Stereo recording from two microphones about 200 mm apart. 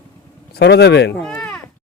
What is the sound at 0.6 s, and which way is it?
Speech, 55° left (ahead or behind).